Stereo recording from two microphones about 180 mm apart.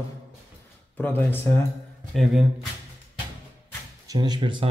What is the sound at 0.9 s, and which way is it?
Speech, 10° left (ahead or behind).